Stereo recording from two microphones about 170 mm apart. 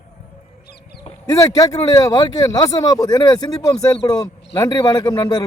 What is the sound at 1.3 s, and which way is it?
Speech, 20° left (ahead or behind).